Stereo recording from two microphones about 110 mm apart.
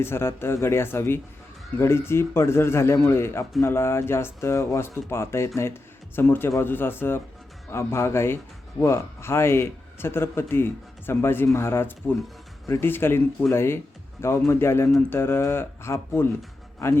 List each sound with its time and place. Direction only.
0.0 s speech: 20° left (ahead or behind)